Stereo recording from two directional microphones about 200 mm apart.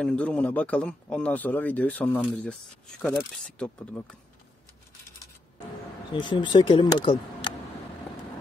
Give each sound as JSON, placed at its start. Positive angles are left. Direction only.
{"t": 0.0, "sound": "speech", "side_deg": 5}
{"t": 3.5, "sound": "speech", "side_deg": 5}
{"t": 6.1, "sound": "speech", "side_deg": 25}